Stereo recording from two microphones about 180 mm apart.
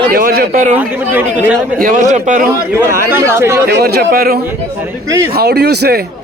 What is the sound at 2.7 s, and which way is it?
Speech, 15° right (ahead or behind).